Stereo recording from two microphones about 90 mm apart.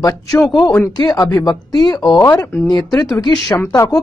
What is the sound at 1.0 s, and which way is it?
Speech, 50° left (ahead or behind).